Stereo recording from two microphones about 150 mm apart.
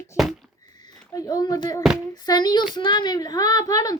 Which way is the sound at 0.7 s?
25° left (ahead or behind).